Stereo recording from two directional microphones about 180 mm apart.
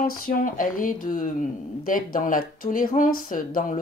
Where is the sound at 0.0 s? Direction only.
50° left (ahead or behind).